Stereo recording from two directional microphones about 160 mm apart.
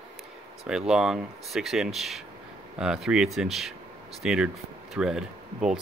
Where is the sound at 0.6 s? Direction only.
5° right (ahead or behind).